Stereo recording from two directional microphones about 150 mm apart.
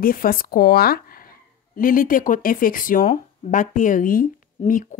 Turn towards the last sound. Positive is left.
turn(degrees=60)  # may be behind; listen again after turning